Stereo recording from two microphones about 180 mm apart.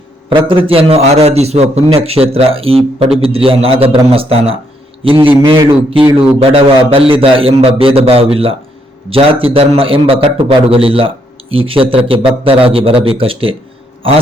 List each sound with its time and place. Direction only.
0.3 s a man's voice: 30° right (ahead or behind)